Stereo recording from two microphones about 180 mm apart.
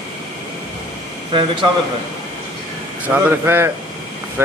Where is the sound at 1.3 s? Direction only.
25° right (ahead or behind).